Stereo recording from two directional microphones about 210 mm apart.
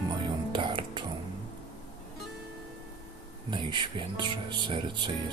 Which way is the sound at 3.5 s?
20° right (ahead or behind).